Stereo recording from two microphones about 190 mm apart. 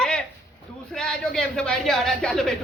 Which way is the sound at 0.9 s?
5° left (ahead or behind).